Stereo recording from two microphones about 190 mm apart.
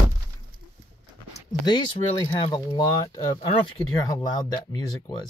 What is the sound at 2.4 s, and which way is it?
Speech, 25° left (ahead or behind).